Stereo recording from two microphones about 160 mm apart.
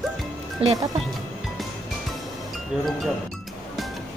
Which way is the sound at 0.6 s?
35° right (ahead or behind).